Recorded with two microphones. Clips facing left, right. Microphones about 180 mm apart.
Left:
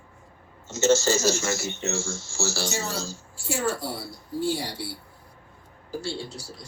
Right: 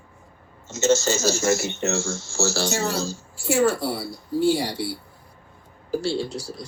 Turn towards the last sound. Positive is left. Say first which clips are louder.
# right 8 dB
turn(degrees=-75)  # may be behind; listen again after turning